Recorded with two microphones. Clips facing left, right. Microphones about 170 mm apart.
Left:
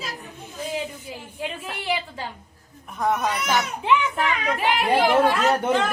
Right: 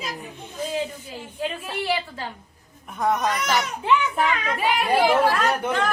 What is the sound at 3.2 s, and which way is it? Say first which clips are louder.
Speech: even; 10° left (ahead or behind).